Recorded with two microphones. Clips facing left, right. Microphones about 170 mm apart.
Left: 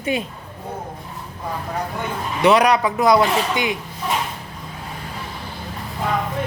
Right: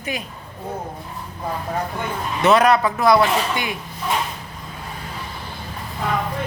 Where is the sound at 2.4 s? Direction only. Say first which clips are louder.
Even; 15° left (ahead or behind).